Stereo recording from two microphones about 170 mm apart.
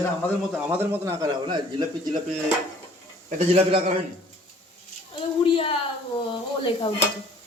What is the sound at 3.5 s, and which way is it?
Speech, 35° right (ahead or behind).